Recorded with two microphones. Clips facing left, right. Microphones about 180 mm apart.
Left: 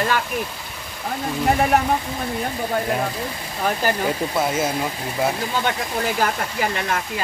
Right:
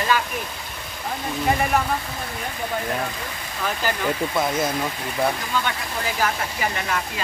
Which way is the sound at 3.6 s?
40° left (ahead or behind).